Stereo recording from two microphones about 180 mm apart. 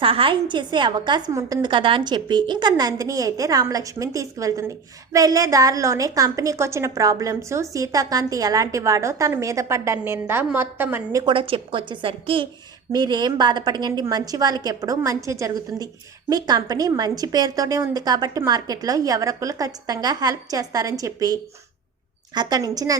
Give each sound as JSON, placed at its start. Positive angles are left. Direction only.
{"t": 0.0, "sound": "a woman's voice", "side_deg": -30}
{"t": 11.3, "sound": "a woman's voice", "side_deg": -30}
{"t": 22.4, "sound": "a woman's voice", "side_deg": -20}